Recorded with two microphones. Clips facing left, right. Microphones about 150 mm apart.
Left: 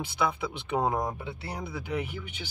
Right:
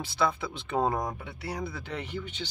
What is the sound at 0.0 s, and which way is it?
Speech, 15° left (ahead or behind).